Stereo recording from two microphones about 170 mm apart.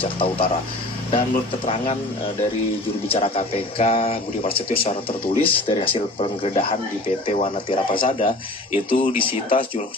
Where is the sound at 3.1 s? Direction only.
35° left (ahead or behind).